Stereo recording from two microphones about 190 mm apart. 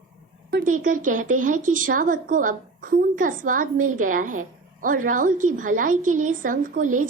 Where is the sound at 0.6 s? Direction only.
45° right (ahead or behind).